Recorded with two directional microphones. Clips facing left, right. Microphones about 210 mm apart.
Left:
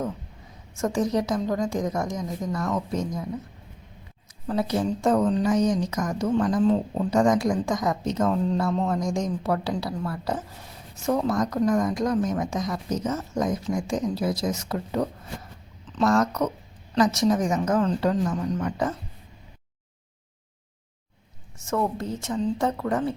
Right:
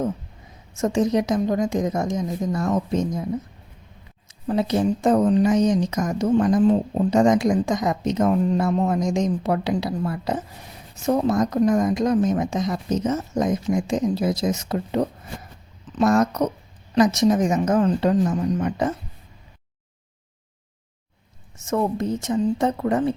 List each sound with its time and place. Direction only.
0.7 s speech: 20° right (ahead or behind)
4.4 s speech: 20° right (ahead or behind)
21.6 s speech: 20° right (ahead or behind)